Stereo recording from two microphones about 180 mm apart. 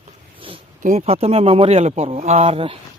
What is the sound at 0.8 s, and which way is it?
Speech, 40° right (ahead or behind).